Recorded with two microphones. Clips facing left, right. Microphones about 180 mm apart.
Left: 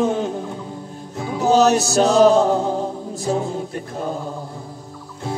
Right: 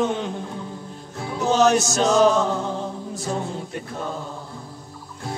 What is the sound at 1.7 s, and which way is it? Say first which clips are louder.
Chant: left 3 dB; 35° left (ahead or behind).